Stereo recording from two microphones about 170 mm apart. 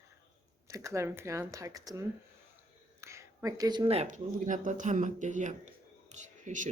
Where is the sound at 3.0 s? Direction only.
15° right (ahead or behind).